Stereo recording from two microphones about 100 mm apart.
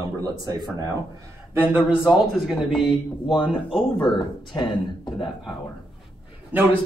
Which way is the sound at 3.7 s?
55° left (ahead or behind).